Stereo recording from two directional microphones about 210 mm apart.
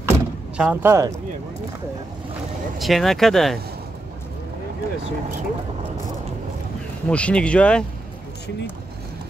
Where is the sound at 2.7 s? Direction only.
Centre (ahead or behind).